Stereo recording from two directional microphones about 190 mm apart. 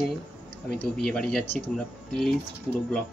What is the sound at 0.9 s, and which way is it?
Speech, 5° left (ahead or behind).